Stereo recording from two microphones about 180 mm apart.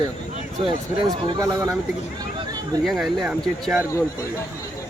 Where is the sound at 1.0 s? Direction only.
20° right (ahead or behind).